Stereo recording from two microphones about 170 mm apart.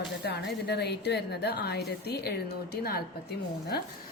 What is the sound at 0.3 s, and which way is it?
A woman's voice, 75° left (ahead or behind).